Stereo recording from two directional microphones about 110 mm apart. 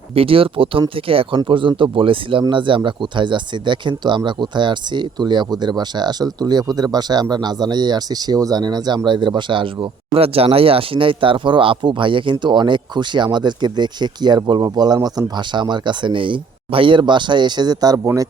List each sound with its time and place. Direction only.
0.1 s speech: 60° right (ahead or behind)
10.2 s speech: 60° right (ahead or behind); by 18.3 s 30° right (ahead or behind)